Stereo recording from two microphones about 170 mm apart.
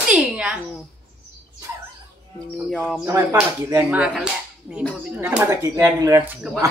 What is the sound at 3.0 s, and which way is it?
Speech, 15° right (ahead or behind).